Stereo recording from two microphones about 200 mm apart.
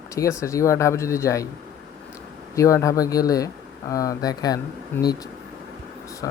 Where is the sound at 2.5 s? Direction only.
15° left (ahead or behind).